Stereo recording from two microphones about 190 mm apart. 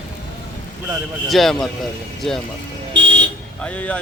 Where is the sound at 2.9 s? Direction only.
70° right (ahead or behind).